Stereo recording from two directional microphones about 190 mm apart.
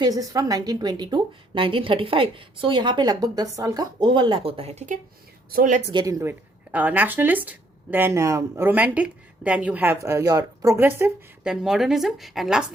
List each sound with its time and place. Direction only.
0.0 s a woman's voice: 20° right (ahead or behind); by 5.8 s 45° right (ahead or behind)
5.9 s a woman's voice: 20° right (ahead or behind); by 12.6 s centre (ahead or behind)